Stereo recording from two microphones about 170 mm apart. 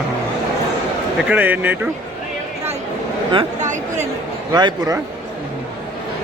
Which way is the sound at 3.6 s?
45° right (ahead or behind).